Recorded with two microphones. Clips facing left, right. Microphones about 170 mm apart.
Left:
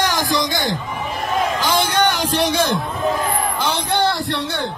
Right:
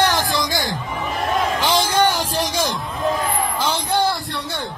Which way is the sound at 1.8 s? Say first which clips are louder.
Even; 70° left (ahead or behind).